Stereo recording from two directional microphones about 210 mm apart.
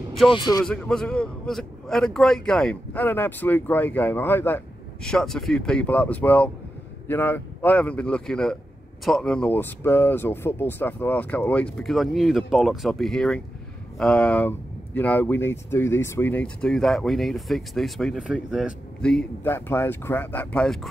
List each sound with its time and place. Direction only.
0.3 s a man's voice: 20° left (ahead or behind)
0.7 s a man's voice: 5° left (ahead or behind)